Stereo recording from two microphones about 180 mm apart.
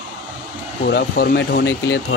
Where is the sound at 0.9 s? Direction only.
60° left (ahead or behind).